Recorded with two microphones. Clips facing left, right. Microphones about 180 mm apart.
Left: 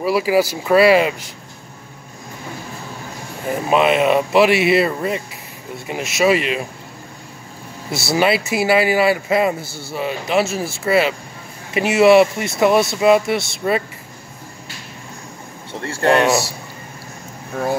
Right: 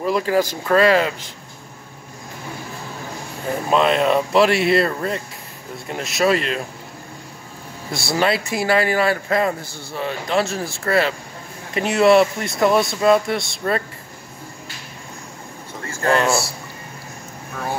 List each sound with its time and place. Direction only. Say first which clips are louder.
0.0 s speech: left 2 dB; 10° left (ahead or behind)
3.6 s speech: left 2 dB; 5° left (ahead or behind)
7.9 s speech: left 3 dB; 5° left (ahead or behind)
16.1 s speech: left 3 dB; 20° left (ahead or behind)